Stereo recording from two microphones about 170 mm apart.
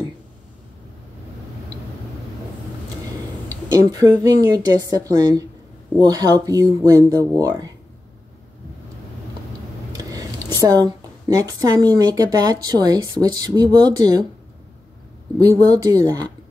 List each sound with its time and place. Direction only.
3.4 s a woman's voice: 20° right (ahead or behind)
9.9 s a woman's voice: 20° right (ahead or behind)
15.7 s a woman's voice: 20° right (ahead or behind)